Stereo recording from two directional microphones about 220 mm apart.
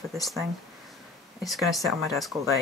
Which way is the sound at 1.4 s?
Centre (ahead or behind).